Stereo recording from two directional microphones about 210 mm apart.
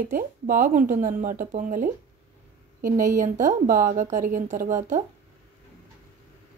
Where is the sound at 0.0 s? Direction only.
40° right (ahead or behind).